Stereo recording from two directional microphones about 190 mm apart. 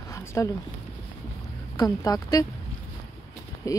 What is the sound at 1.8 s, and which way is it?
Speech, 20° left (ahead or behind).